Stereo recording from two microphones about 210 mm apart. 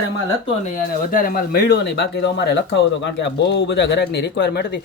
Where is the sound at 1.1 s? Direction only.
40° left (ahead or behind).